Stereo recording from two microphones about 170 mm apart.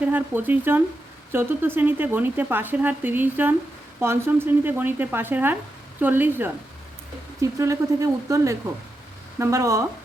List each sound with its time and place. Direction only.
0.0 s speech: 10° right (ahead or behind)